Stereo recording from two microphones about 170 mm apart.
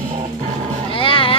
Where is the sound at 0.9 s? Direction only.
30° left (ahead or behind).